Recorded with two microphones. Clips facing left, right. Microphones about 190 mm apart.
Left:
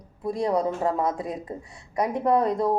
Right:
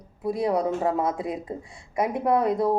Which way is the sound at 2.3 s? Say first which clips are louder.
Even; 15° right (ahead or behind).